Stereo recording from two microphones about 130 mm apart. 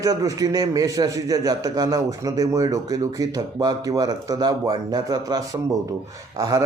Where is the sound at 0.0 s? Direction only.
30° right (ahead or behind).